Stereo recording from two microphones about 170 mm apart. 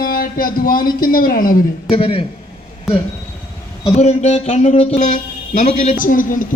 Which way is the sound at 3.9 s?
40° left (ahead or behind).